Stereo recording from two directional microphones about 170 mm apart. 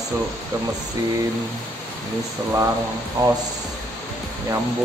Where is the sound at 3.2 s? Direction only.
20° right (ahead or behind).